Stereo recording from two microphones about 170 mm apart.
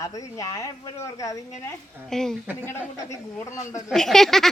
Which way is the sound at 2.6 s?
15° left (ahead or behind).